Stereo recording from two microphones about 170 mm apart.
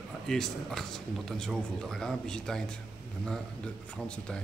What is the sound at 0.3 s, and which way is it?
Speech, centre (ahead or behind).